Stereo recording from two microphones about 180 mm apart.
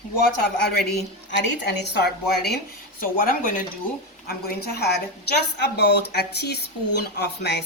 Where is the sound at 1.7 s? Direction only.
65° left (ahead or behind).